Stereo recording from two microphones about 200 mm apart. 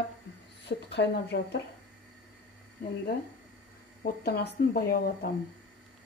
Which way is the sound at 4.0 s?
50° left (ahead or behind).